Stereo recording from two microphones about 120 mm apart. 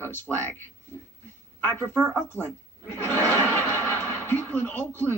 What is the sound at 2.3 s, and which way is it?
Speech, 15° left (ahead or behind).